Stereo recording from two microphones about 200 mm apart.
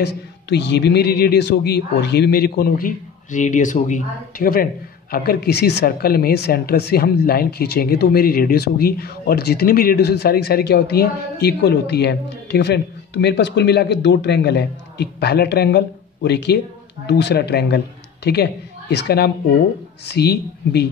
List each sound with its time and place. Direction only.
0.0 s a woman's voice: 60° left (ahead or behind)